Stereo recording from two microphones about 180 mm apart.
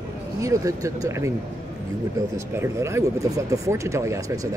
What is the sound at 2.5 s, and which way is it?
Speech, 15° right (ahead or behind).